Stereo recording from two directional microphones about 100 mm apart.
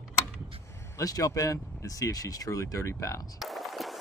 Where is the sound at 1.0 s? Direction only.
35° left (ahead or behind).